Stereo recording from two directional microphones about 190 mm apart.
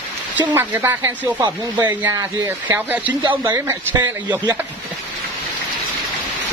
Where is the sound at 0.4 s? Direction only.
10° right (ahead or behind).